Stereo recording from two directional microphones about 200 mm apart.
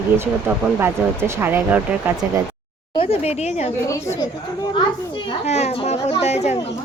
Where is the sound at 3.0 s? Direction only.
30° left (ahead or behind).